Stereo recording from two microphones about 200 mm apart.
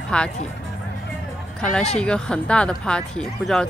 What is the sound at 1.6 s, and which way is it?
Speech, 5° left (ahead or behind).